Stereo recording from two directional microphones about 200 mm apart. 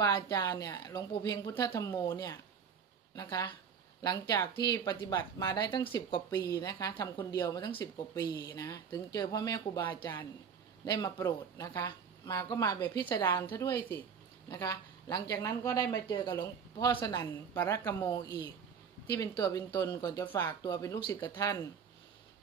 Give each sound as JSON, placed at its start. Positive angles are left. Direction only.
{"t": 0.0, "sound": "speech", "side_deg": 20}